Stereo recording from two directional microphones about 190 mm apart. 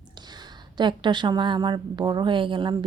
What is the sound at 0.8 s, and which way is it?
A woman's voice, 25° right (ahead or behind).